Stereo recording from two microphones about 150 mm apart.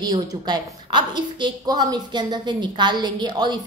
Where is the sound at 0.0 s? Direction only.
25° right (ahead or behind).